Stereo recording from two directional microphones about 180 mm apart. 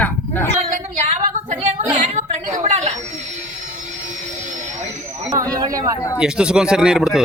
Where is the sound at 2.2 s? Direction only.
40° right (ahead or behind).